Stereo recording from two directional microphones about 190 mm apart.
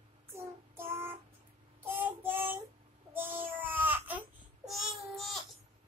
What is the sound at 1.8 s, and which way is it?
Child singing, 10° right (ahead or behind).